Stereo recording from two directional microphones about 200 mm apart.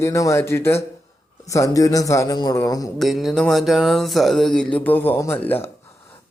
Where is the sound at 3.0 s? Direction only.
Centre (ahead or behind).